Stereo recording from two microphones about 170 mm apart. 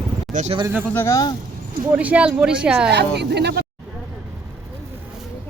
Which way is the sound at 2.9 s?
80° right.